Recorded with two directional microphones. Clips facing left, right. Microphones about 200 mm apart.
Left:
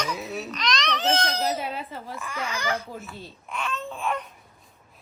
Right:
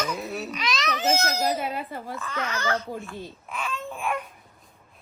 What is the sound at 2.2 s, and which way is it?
Speech, 10° left (ahead or behind).